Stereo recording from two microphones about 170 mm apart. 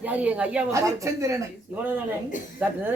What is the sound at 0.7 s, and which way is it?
Speech, 20° right (ahead or behind).